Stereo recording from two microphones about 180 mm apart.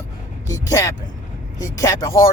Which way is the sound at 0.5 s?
20° left (ahead or behind).